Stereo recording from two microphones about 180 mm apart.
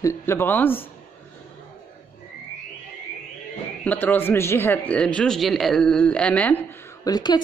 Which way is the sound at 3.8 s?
10° left (ahead or behind).